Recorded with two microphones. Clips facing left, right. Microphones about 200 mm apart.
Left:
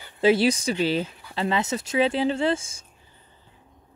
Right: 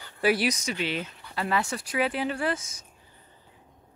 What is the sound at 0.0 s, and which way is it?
Speech, 25° left (ahead or behind).